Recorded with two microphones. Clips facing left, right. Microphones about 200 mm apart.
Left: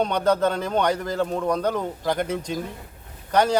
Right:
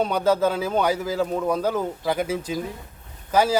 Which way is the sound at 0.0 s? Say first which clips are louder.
Even; 5° right (ahead or behind).